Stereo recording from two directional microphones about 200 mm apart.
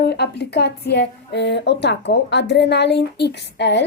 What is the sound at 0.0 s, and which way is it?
A woman's voice, 55° left (ahead or behind).